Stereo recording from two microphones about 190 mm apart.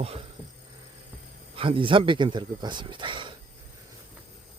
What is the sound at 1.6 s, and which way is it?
Speech, 25° right (ahead or behind).